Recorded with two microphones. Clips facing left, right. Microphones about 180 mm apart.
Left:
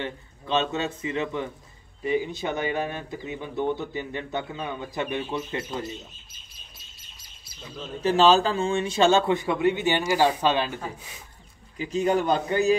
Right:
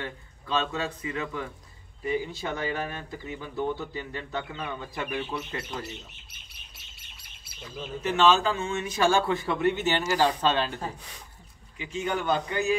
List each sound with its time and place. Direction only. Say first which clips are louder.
0.0 s speech: left 4 dB; 25° left (ahead or behind)
5.9 s bird: left 4 dB; 70° right (ahead or behind)
8.0 s a man's voice: left 4 dB; 35° left (ahead or behind); by 11.1 s 10° left (ahead or behind)
11.8 s a man's voice: left 7 dB; 40° left (ahead or behind)